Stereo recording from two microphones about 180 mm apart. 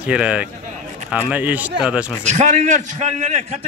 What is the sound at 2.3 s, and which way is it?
A man's voice, 40° right (ahead or behind).